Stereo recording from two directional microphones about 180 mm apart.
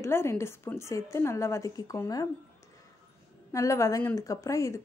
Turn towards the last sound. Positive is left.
turn(degrees=15)  # may be behind; listen again after turning